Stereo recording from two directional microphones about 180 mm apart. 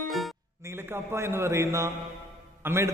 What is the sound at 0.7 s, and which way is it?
A man's voice, 15° right (ahead or behind).